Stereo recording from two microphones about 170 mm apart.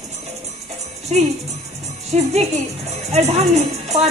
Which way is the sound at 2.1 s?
40° right (ahead or behind).